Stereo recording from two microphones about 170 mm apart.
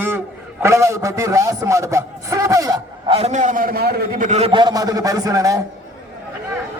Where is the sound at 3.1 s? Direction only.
40° right (ahead or behind); by 4.1 s 65° right (ahead or behind).